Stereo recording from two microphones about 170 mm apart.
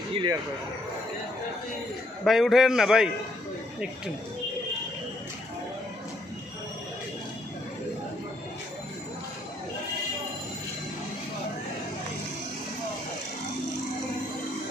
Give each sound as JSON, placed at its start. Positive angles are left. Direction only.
{"t": 0.1, "sound": "speech", "side_deg": -25}
{"t": 2.2, "sound": "a man's voice", "side_deg": 0}